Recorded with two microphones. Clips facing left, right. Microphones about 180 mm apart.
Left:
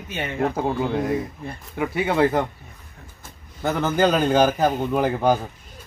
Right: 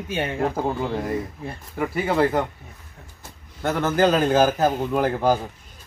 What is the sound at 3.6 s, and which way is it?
A man's voice, centre (ahead or behind).